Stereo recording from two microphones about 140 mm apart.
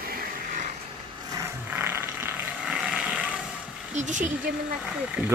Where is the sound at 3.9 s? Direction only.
60° right (ahead or behind).